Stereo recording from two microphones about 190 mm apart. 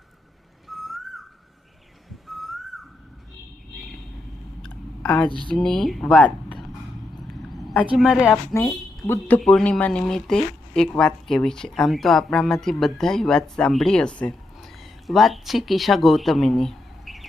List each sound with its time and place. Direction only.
0.7 s whistling: centre (ahead or behind)
2.2 s whistling: centre (ahead or behind)
4.6 s a sound: 10° left (ahead or behind)
5.3 s speech: 25° right (ahead or behind)
5.5 s speech: centre (ahead or behind)
7.5 s a sound: centre (ahead or behind)
7.9 s speech: centre (ahead or behind)